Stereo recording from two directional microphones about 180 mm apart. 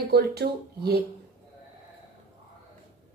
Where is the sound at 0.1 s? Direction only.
65° right (ahead or behind).